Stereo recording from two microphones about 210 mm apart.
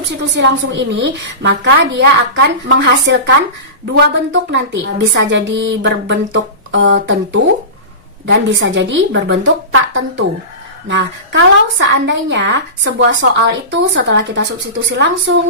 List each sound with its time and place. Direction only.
0.0 s speech: 60° right (ahead or behind)